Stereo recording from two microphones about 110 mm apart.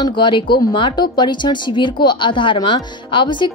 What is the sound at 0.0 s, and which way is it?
Speech, 45° left (ahead or behind).